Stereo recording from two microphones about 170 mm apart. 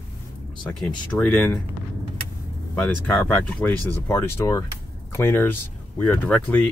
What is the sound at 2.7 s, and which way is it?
Speech, 10° left (ahead or behind).